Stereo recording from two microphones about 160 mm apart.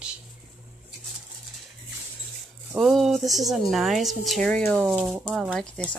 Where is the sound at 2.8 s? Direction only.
Centre (ahead or behind).